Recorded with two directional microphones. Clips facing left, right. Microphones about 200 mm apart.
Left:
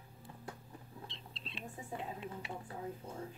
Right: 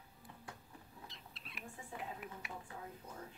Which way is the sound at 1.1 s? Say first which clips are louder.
Left 5 dB; 30° left (ahead or behind).